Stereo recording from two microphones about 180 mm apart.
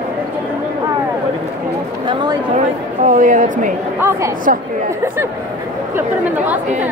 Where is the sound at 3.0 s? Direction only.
45° right (ahead or behind).